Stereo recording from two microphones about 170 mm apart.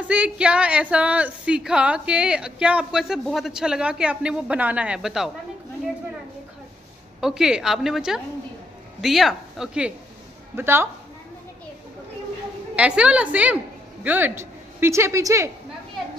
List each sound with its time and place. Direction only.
0.1 s a woman's voice: 5° right (ahead or behind)
7.2 s a woman's voice: 5° right (ahead or behind)
12.7 s a woman's voice: 5° right (ahead or behind)